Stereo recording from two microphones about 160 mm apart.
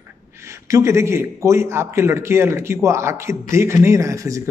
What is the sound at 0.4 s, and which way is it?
A man's voice, 20° right (ahead or behind).